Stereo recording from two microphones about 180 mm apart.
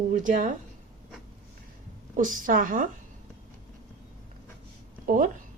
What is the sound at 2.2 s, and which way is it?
Speech, 50° right (ahead or behind).